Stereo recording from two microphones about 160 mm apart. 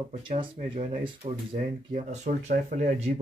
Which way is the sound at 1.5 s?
55° right (ahead or behind).